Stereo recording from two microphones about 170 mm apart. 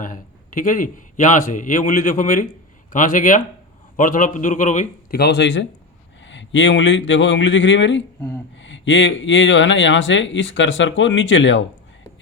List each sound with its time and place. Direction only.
0.0 s a man's voice: 50° left (ahead or behind)
5.1 s speech: 80° left